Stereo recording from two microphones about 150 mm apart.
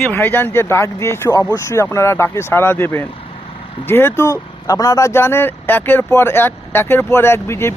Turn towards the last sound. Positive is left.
turn(degrees=15)  # may be behind; listen again after turning